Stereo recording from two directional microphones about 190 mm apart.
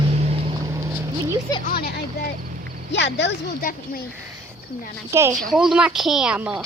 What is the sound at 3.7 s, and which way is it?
Speech, 45° left (ahead or behind).